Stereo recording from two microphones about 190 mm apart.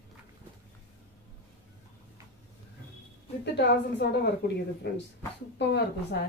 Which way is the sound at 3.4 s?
65° left (ahead or behind).